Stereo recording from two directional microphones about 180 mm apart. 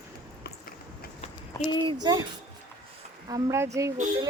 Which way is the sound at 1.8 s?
20° right (ahead or behind).